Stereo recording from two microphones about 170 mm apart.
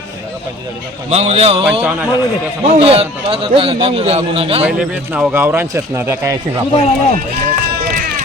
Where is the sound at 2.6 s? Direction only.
35° right (ahead or behind).